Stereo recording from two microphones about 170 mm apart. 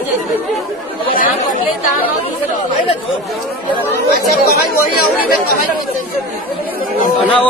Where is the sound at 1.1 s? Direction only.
55° left (ahead or behind).